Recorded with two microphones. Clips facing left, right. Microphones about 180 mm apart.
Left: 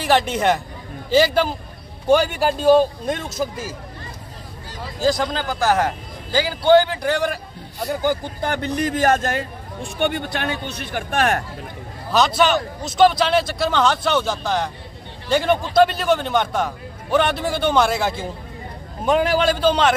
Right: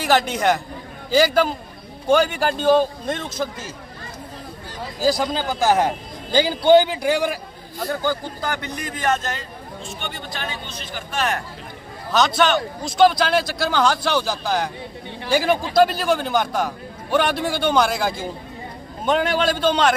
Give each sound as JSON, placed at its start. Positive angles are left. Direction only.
{"t": 0.0, "sound": "a man's voice", "side_deg": 0}
{"t": 5.0, "sound": "a man's voice", "side_deg": -10}
{"t": 7.8, "sound": "speech", "side_deg": 15}
{"t": 8.4, "sound": "a man's voice", "side_deg": 30}
{"t": 12.4, "sound": "a man's voice", "side_deg": 5}